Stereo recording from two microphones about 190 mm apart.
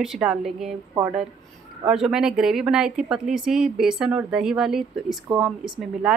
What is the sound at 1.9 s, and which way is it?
Speech, centre (ahead or behind).